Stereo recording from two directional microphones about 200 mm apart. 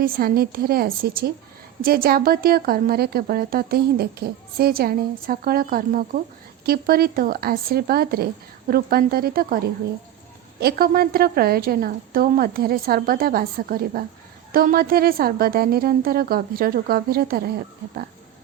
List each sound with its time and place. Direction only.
0.0 s a woman's voice: 45° right (ahead or behind)
10.6 s a woman's voice: 50° right (ahead or behind)